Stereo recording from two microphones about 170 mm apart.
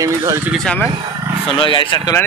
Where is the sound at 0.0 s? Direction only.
20° right (ahead or behind).